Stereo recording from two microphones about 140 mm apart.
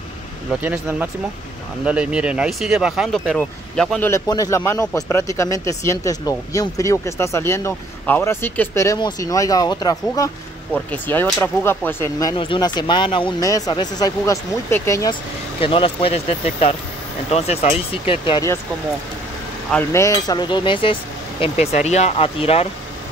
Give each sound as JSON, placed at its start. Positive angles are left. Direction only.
{"t": 0.5, "sound": "speech", "side_deg": -10}
{"t": 4.3, "sound": "speech", "side_deg": 25}
{"t": 10.7, "sound": "speech", "side_deg": 10}
{"t": 12.4, "sound": "speech", "side_deg": 35}
{"t": 15.6, "sound": "speech", "side_deg": 40}
{"t": 19.9, "sound": "speech", "side_deg": 20}
{"t": 21.5, "sound": "speech", "side_deg": 55}